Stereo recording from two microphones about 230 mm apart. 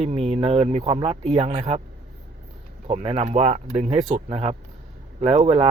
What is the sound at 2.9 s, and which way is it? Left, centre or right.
Speech, right.